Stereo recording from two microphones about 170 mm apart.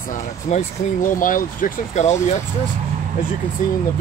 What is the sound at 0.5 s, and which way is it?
Speech, 50° left (ahead or behind).